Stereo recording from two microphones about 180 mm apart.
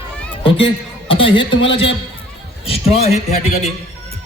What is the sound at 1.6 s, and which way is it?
A man's voice, 30° left (ahead or behind).